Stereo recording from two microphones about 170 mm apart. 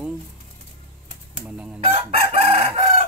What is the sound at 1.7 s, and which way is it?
Chicken, 35° right (ahead or behind).